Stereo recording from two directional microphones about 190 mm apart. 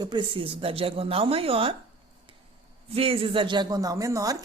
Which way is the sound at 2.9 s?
30° right (ahead or behind).